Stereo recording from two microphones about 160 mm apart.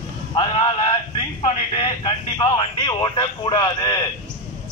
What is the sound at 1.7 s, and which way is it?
Speech, 30° left (ahead or behind).